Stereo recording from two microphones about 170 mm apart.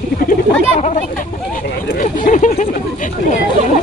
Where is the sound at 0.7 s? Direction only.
45° left (ahead or behind).